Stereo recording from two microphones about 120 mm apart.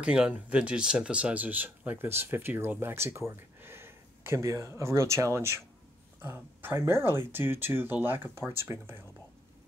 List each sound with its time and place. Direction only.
0.0 s speech: 10° right (ahead or behind)